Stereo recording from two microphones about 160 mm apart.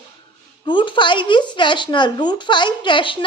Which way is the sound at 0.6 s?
30° left (ahead or behind).